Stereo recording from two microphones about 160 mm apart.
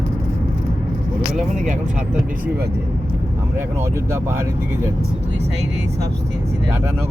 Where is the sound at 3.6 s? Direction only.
15° right (ahead or behind).